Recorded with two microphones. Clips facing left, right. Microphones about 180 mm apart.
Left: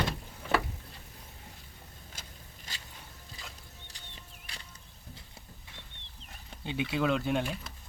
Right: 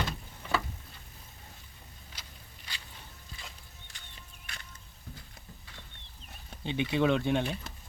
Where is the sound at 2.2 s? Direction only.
45° left (ahead or behind).